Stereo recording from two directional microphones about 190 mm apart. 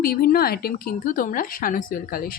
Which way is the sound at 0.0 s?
50° left (ahead or behind).